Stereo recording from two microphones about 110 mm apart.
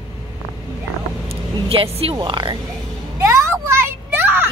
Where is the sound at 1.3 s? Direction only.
60° right (ahead or behind).